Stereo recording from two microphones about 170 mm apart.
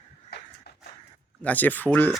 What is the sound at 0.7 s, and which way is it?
Horse, 75° left (ahead or behind).